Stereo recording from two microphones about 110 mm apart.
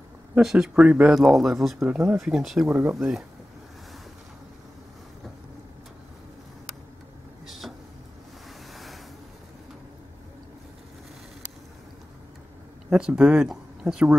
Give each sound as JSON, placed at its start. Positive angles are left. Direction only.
{"t": 0.3, "sound": "speech", "side_deg": -5}
{"t": 2.7, "sound": "speech", "side_deg": -25}
{"t": 3.0, "sound": "speech", "side_deg": -5}
{"t": 7.4, "sound": "vehicle", "side_deg": 0}
{"t": 8.7, "sound": "a sound", "side_deg": 0}
{"t": 12.9, "sound": "speech", "side_deg": -10}